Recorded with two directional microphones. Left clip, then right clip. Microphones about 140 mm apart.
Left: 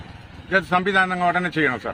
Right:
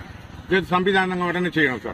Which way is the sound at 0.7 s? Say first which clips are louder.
Left 1 dB; 25° left (ahead or behind).